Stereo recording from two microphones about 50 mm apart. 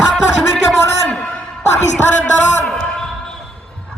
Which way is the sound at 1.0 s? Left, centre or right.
Left.